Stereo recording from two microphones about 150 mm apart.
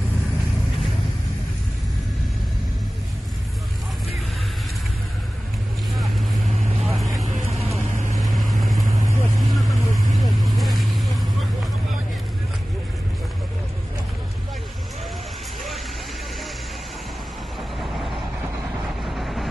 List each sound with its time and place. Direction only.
6.8 s vehicle: centre (ahead or behind)
7.9 s vehicle: 55° right (ahead or behind)
8.2 s vehicle: centre (ahead or behind)
19.1 s vehicle: centre (ahead or behind)